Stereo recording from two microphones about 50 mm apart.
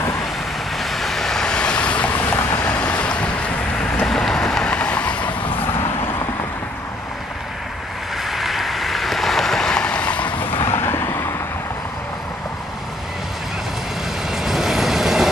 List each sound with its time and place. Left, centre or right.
0.7 s vehicle: centre; by 3.5 s left
4.0 s vehicle: centre; by 5.3 s left
8.2 s vehicle: centre; by 10.3 s left
10.4 s vehicle: left
10.7 s vehicle: left
14.3 s vehicle: centre